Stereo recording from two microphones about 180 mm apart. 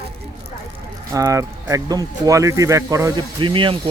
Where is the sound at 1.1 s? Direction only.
15° right (ahead or behind).